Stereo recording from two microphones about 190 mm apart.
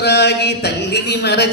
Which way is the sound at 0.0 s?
60° left (ahead or behind).